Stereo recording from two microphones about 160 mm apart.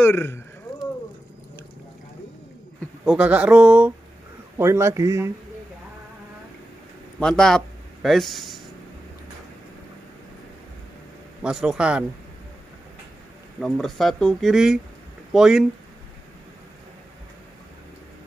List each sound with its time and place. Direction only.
0.0 s speech: 15° left (ahead or behind)
3.1 s speech: 10° right (ahead or behind)
7.2 s a man's voice: 5° left (ahead or behind)
11.4 s speech: 5° right (ahead or behind)
13.6 s speech: centre (ahead or behind)